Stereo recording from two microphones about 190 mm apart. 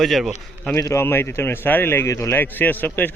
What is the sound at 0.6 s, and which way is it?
A man's voice, 10° left (ahead or behind).